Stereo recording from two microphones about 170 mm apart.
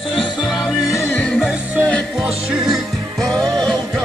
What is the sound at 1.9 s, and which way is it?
Music, 5° left (ahead or behind).